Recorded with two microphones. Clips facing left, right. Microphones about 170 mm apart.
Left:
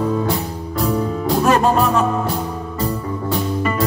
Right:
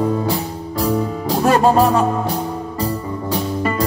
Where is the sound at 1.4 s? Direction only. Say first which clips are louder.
Right 3 dB; 35° right (ahead or behind).